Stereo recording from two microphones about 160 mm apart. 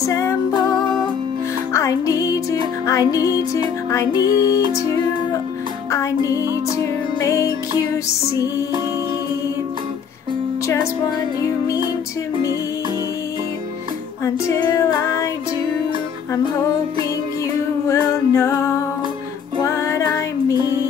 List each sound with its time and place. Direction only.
0.0 s music: 15° left (ahead or behind)
5.9 s music: 20° left (ahead or behind)
14.2 s music: 25° left (ahead or behind)
17.8 s music: 20° left (ahead or behind)